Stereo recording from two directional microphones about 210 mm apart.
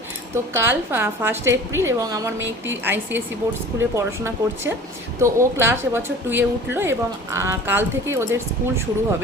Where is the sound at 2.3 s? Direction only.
60° right (ahead or behind).